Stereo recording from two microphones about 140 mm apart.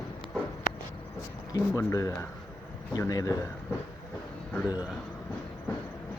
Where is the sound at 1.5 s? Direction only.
25° left (ahead or behind).